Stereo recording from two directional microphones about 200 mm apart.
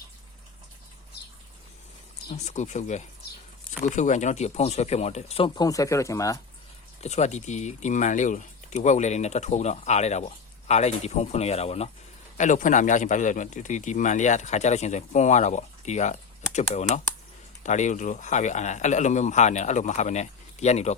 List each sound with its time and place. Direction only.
2.3 s speech: 35° left (ahead or behind); by 6.4 s 15° left (ahead or behind)
7.0 s speech: 35° left (ahead or behind)